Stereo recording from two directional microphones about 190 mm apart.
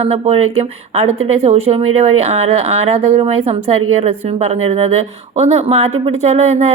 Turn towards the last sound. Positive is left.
turn(degrees=-35)  # may be behind; listen again after turning